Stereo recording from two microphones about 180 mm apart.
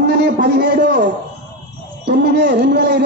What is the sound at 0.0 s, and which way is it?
A man's voice, 65° right (ahead or behind).